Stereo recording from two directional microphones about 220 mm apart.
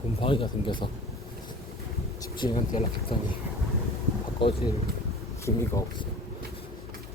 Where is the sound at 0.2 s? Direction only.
25° left (ahead or behind).